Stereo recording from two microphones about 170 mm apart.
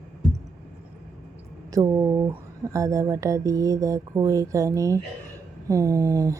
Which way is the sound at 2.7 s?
20° right (ahead or behind).